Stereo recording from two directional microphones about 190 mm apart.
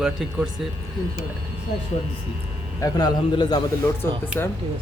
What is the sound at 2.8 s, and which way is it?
Speech, 20° left (ahead or behind).